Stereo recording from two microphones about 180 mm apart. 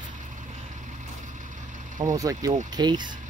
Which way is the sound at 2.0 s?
20° right (ahead or behind).